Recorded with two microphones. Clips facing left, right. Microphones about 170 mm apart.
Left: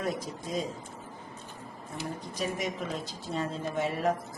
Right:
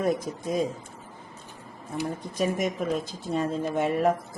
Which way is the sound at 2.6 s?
50° right (ahead or behind).